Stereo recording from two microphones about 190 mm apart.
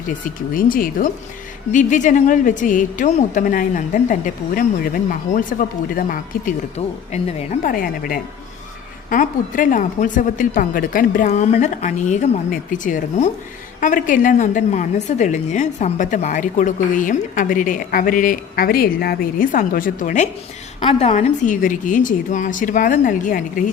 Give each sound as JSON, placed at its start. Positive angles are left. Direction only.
{"t": 0.1, "sound": "a woman's voice", "side_deg": 45}
{"t": 7.6, "sound": "a woman's voice", "side_deg": 45}